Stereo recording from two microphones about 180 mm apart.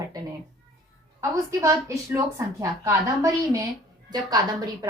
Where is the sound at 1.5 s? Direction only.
15° right (ahead or behind).